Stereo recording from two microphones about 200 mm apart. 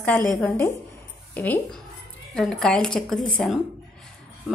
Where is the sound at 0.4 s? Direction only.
10° left (ahead or behind).